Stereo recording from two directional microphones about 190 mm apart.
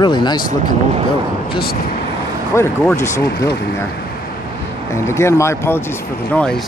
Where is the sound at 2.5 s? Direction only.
15° left (ahead or behind).